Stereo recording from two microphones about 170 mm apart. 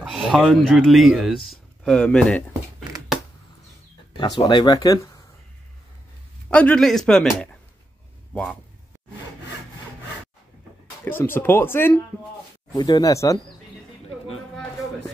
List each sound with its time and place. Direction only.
0.0 s speech: 5° right (ahead or behind)
4.2 s speech: 25° left (ahead or behind)
6.5 s speech: 5° left (ahead or behind)
11.1 s speech: 10° left (ahead or behind)